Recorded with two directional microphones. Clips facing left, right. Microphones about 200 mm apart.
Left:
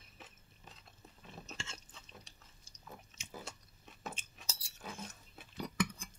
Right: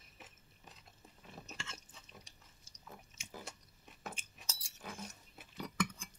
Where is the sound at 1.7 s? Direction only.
15° right (ahead or behind).